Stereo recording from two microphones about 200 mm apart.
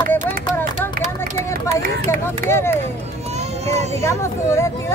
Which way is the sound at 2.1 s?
10° left (ahead or behind).